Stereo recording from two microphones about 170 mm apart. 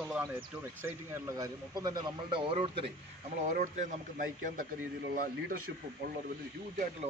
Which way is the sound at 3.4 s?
45° right (ahead or behind).